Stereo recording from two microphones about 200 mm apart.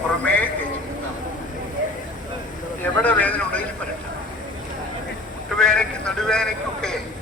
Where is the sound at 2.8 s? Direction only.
5° left (ahead or behind).